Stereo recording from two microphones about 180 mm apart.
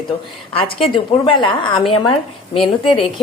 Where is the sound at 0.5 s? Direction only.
30° left (ahead or behind).